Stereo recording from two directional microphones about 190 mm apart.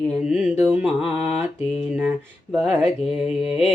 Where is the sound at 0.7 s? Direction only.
5° right (ahead or behind).